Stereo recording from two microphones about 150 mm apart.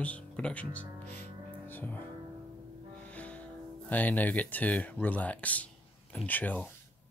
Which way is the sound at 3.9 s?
10° left (ahead or behind).